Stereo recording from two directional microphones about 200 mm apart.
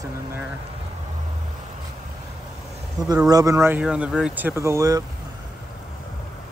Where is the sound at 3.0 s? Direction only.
20° right (ahead or behind).